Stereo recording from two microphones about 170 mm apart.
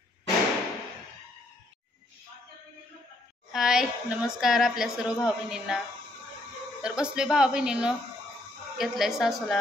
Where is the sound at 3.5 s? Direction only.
5° right (ahead or behind).